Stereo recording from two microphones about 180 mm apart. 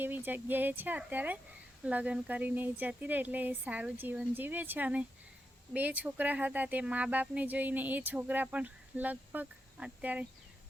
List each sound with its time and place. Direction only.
0.0 s speech: 10° right (ahead or behind)